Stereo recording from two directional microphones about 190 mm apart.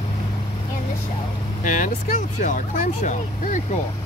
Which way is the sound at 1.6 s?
45° left (ahead or behind).